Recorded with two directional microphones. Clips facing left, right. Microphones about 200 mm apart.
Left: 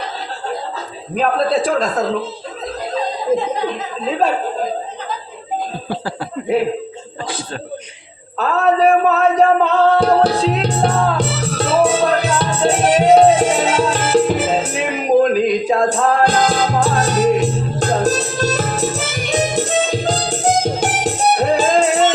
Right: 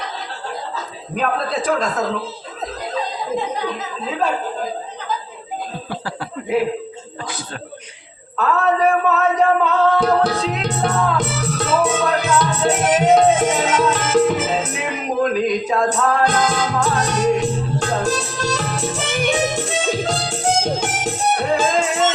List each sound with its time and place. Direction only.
1.1 s a woman's voice: 30° left (ahead or behind)
5.9 s speech: 30° left (ahead or behind)
8.4 s music: 30° left (ahead or behind)